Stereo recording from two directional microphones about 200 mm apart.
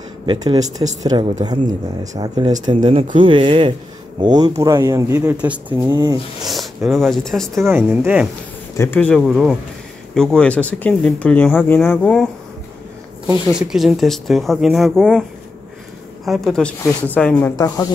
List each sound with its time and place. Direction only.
0.3 s speech: 20° right (ahead or behind)
5.9 s speech: 20° right (ahead or behind)
6.4 s speech: centre (ahead or behind)
7.6 s speech: 10° right (ahead or behind)
8.7 s speech: 10° left (ahead or behind)
13.5 s speech: 5° right (ahead or behind)
16.3 s speech: centre (ahead or behind); by 17.8 s 20° left (ahead or behind)